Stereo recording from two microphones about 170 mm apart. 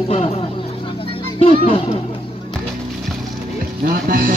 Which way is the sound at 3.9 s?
60° right (ahead or behind).